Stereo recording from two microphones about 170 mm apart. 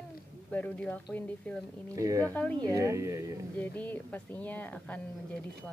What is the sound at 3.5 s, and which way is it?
A woman's voice, 10° left (ahead or behind).